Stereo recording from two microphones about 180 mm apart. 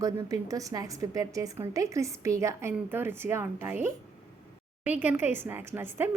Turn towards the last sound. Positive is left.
turn(degrees=-10)  # may be behind; listen again after turning